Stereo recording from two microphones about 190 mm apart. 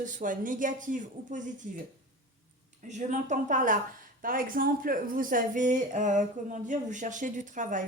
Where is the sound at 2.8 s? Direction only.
40° right (ahead or behind).